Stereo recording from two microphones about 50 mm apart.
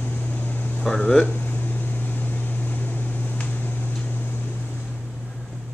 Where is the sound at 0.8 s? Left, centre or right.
Centre.